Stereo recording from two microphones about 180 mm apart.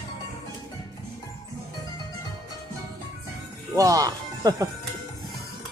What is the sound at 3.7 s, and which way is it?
Music, 20° right (ahead or behind).